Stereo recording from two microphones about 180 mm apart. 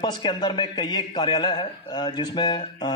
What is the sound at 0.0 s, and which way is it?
A man's voice, 25° left (ahead or behind).